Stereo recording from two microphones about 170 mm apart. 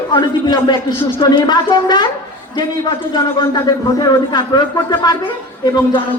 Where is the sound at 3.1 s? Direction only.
25° left (ahead or behind).